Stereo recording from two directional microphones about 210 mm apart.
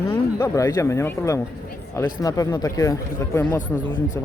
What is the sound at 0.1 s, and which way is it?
Speech, 15° left (ahead or behind).